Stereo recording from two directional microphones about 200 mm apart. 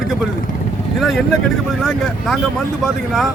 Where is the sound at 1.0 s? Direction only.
Centre (ahead or behind).